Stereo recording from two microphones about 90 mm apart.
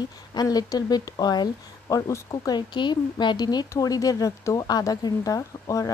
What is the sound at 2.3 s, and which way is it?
Speech, 50° left (ahead or behind).